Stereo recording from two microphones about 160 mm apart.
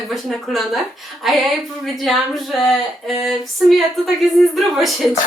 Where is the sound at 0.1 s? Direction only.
Centre (ahead or behind).